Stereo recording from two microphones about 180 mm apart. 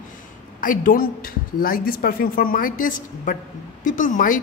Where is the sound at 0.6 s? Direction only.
50° left (ahead or behind).